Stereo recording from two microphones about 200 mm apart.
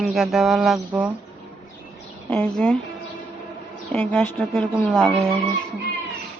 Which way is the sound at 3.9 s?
10° left (ahead or behind).